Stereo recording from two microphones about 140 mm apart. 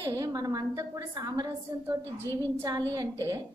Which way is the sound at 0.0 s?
20° right (ahead or behind).